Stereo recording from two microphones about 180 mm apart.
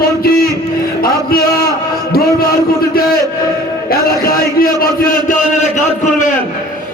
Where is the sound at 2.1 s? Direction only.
55° left (ahead or behind).